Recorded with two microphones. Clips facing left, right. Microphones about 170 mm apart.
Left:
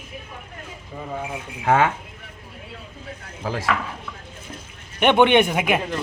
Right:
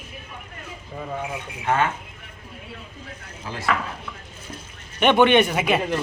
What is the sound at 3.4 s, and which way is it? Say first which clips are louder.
Speech: left 7 dB; 90° left.